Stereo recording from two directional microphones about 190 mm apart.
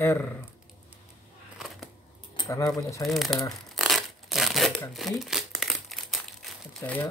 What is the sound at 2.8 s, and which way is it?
Speech, 15° left (ahead or behind).